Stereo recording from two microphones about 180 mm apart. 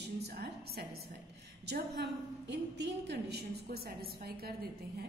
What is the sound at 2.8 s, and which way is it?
A woman's voice, 65° right (ahead or behind).